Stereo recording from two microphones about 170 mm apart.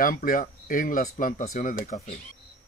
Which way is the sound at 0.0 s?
55° left (ahead or behind).